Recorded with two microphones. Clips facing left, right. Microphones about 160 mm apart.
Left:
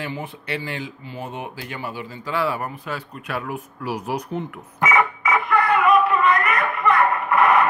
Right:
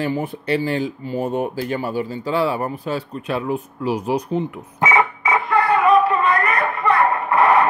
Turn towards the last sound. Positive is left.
turn(degrees=-30)  # may be behind; listen again after turning